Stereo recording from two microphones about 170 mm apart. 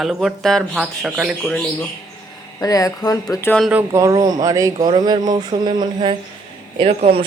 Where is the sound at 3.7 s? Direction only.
15° right (ahead or behind).